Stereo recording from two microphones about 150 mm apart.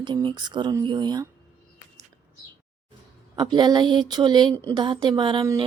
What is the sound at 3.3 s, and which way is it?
Speech, 30° right (ahead or behind).